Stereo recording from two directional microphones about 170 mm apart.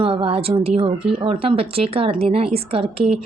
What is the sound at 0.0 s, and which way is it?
A woman's voice, 30° right (ahead or behind).